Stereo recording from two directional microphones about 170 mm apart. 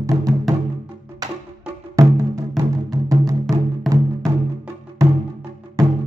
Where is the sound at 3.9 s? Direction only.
Centre (ahead or behind).